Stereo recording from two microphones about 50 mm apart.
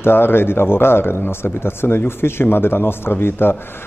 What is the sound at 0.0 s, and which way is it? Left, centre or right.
A man's voice, left.